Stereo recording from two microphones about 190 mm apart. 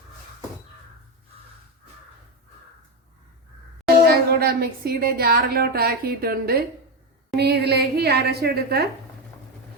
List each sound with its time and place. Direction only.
3.8 s a woman's voice: 55° right (ahead or behind)